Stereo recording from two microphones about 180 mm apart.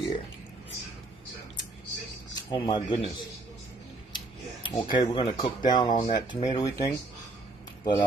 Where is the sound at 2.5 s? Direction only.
25° left (ahead or behind).